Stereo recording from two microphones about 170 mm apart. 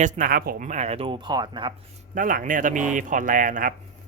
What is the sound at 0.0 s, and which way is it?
Speech, 55° right (ahead or behind).